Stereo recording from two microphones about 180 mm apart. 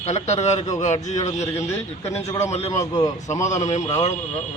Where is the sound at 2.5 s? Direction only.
35° left (ahead or behind).